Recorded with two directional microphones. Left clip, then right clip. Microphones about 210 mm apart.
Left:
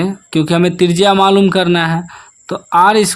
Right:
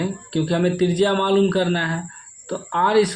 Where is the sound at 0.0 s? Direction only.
45° left (ahead or behind).